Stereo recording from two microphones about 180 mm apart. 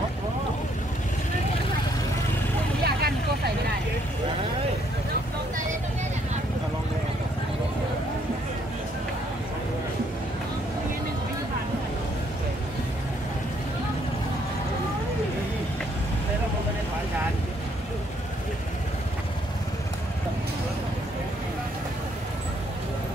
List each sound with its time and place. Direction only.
2.8 s vehicle: 60° right (ahead or behind)